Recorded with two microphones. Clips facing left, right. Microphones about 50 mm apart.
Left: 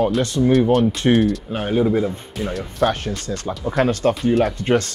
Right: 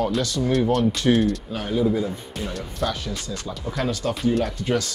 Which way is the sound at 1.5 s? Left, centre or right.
Left.